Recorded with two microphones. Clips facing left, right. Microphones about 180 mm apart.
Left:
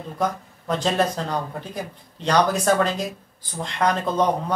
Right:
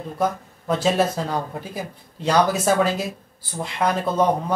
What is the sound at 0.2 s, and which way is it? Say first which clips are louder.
Speech: right 2 dB; 5° right (ahead or behind).